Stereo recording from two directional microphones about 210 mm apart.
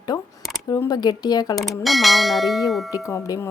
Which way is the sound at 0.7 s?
20° left (ahead or behind).